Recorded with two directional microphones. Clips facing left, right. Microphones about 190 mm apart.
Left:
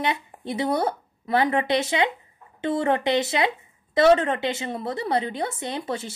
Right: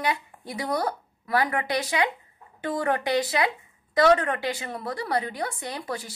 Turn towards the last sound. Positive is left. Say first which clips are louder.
# left 4 dB
turn(degrees=25)  # may be behind; listen again after turning